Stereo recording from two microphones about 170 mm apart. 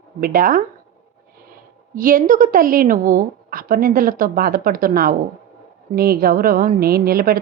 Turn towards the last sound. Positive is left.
turn(degrees=-60)  # may be behind; listen again after turning